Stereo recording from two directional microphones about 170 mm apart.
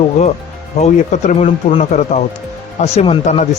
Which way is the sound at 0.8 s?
45° left (ahead or behind).